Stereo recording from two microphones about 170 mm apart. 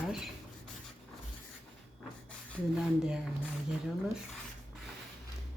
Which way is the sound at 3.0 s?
5° right (ahead or behind).